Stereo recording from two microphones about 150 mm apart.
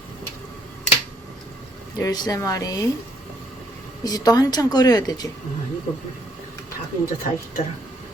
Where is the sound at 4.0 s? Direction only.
25° left (ahead or behind).